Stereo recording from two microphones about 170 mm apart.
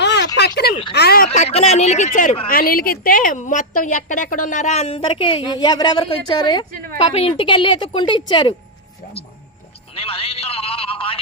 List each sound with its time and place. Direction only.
0.0 s a sound: 90° left
0.3 s speech: 75° left (ahead or behind)
1.3 s speech: 40° left (ahead or behind)
2.5 s a woman's voice: 60° left (ahead or behind); by 8.5 s 25° left (ahead or behind)
9.9 s music: 35° left (ahead or behind)